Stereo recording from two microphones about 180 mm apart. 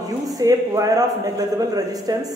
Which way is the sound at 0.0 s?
20° right (ahead or behind).